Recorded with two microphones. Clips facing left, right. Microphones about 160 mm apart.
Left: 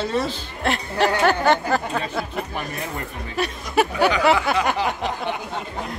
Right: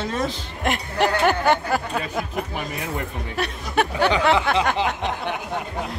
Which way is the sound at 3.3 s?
5° left (ahead or behind).